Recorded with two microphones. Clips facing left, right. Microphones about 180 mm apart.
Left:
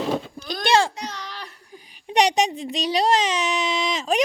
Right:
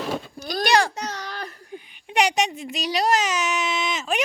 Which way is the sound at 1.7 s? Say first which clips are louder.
Left 3 dB; 35° left (ahead or behind).